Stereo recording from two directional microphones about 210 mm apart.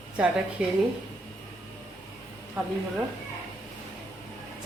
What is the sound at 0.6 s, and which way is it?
Speech, 5° right (ahead or behind).